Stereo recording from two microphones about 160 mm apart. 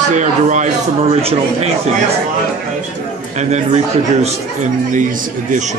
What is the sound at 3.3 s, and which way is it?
Speech, 45° right (ahead or behind).